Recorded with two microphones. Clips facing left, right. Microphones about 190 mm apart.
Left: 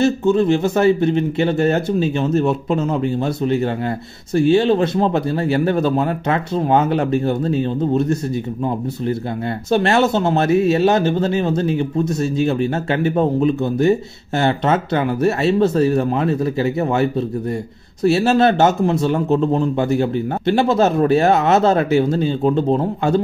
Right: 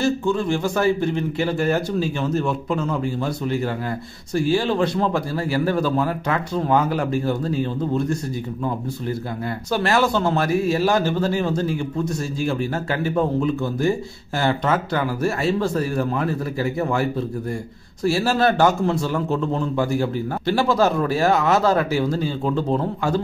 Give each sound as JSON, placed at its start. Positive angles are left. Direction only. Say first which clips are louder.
{"t": 0.0, "sound": "a man's voice", "louder": "left 6 dB", "side_deg": 20}
{"t": 4.4, "sound": "a man's voice", "louder": "left 6 dB", "side_deg": 25}
{"t": 9.7, "sound": "a man's voice", "louder": "left 4 dB", "side_deg": 25}
{"t": 18.0, "sound": "a man's voice", "louder": "left 5 dB", "side_deg": 20}